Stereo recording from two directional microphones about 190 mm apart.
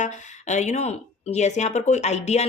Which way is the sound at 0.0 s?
40° left (ahead or behind).